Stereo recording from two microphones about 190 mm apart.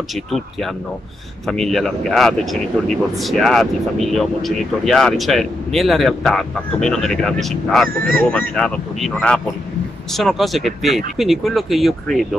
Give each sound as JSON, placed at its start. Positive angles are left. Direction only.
{"t": 0.1, "sound": "speech", "side_deg": 0}